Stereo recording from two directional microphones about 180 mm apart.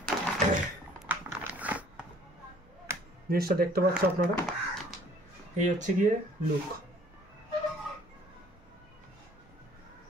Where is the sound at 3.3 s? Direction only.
55° right (ahead or behind).